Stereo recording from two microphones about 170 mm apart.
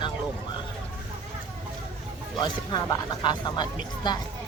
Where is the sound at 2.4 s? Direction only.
25° left (ahead or behind).